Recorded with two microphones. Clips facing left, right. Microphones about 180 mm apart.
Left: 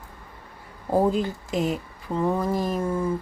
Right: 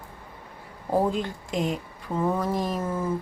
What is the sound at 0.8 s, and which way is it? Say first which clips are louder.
Speech: left 3 dB; centre (ahead or behind).